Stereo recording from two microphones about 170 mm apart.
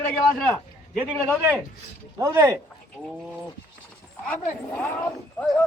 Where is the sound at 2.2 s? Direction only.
15° right (ahead or behind).